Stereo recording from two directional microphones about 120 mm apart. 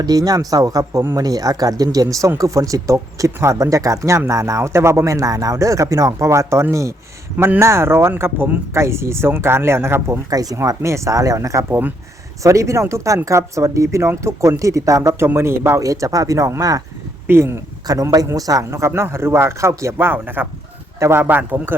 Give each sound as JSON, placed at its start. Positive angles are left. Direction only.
{"t": 0.0, "sound": "a man's voice", "side_deg": -30}